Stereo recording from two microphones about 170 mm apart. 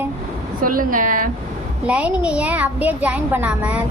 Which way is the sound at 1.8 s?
5° right (ahead or behind).